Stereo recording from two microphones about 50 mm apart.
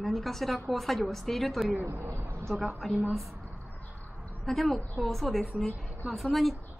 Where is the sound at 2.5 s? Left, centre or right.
Centre.